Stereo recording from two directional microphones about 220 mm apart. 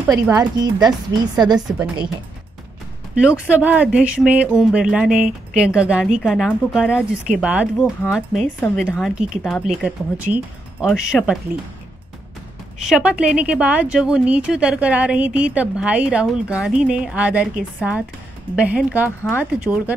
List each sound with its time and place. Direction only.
0.1 s speech: 15° right (ahead or behind)
3.2 s speech: 5° right (ahead or behind)
12.8 s speech: 5° right (ahead or behind)
19.7 s speech: 5° left (ahead or behind)